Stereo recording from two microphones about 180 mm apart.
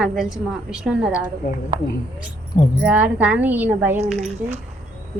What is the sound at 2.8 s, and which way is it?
A woman's voice, 5° right (ahead or behind).